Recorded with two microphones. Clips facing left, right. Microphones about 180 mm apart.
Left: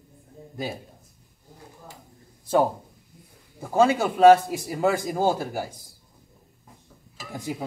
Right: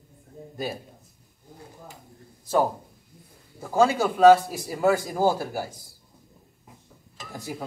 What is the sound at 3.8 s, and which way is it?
A man's voice, 20° left (ahead or behind).